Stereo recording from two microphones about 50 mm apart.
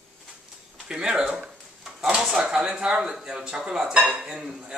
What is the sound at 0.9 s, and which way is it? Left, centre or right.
Speech, centre.